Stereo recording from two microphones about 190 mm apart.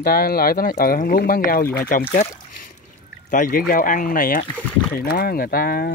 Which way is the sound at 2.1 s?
55° left (ahead or behind).